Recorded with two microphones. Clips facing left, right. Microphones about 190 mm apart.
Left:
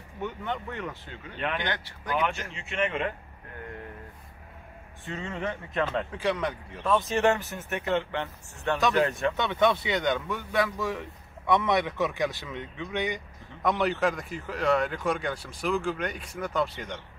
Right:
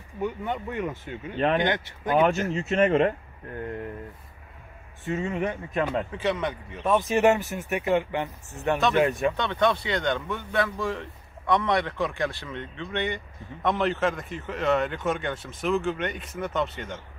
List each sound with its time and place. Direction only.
0.2 s speech: 10° right (ahead or behind)
1.3 s speech: 35° right (ahead or behind)
1.6 s speech: 20° right (ahead or behind)
2.5 s speech: 40° right (ahead or behind)
5.0 s speech: 15° right (ahead or behind)
6.8 s speech: 20° right (ahead or behind)
9.4 s speech: 10° left (ahead or behind)